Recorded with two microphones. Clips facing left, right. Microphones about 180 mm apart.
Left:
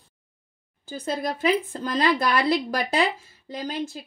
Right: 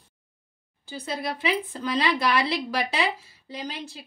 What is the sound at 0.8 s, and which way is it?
A woman's voice, 50° left (ahead or behind).